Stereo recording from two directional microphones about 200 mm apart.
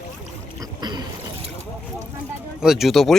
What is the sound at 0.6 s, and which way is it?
Boat, 20° right (ahead or behind).